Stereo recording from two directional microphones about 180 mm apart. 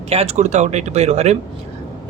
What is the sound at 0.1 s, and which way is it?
Speech, 35° right (ahead or behind).